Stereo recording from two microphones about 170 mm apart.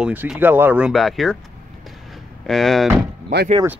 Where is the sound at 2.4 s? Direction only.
Centre (ahead or behind).